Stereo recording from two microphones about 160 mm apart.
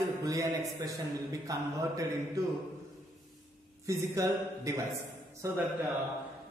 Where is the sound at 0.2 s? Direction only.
20° right (ahead or behind).